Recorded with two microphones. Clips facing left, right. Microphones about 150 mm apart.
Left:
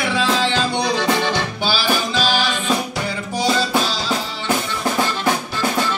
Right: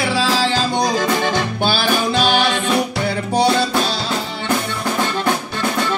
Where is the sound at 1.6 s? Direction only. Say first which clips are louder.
Right 3 dB; 55° right (ahead or behind).